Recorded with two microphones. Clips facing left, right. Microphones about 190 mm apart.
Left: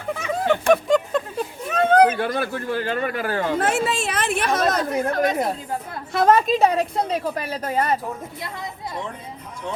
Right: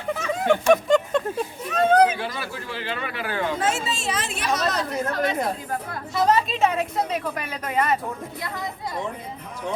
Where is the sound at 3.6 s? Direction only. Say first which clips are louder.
Left 4 dB; 60° left (ahead or behind); by 7.9 s 35° left (ahead or behind).